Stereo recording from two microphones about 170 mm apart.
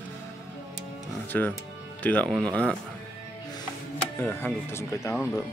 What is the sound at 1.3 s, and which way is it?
Speech, 10° left (ahead or behind).